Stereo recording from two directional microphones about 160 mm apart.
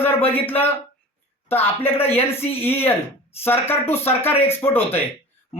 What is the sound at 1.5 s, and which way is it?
Speech, 15° left (ahead or behind).